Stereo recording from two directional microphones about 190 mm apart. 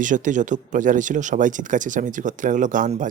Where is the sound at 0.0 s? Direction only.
40° right (ahead or behind).